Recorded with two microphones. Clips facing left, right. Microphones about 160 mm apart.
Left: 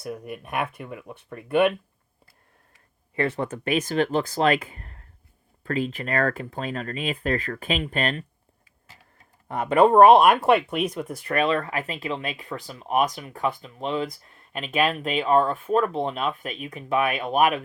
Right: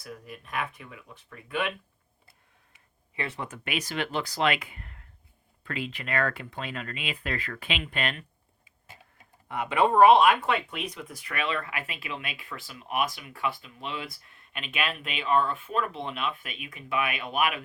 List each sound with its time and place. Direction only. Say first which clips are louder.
0.1 s speech: left 6 dB; 60° left (ahead or behind)
3.2 s speech: left 9 dB; 45° left (ahead or behind)
9.5 s speech: left 7 dB; 40° left (ahead or behind)